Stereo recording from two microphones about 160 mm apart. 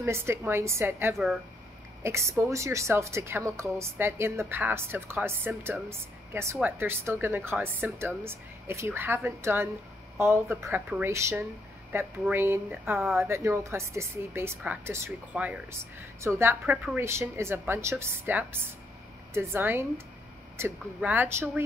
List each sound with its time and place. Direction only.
0.0 s speech: 15° right (ahead or behind)
1.1 s speech: centre (ahead or behind)
2.0 s speech: 15° right (ahead or behind)